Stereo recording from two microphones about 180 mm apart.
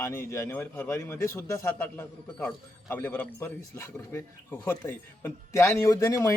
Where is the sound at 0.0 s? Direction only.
15° left (ahead or behind).